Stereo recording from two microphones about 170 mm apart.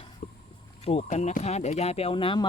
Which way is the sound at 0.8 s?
35° left (ahead or behind).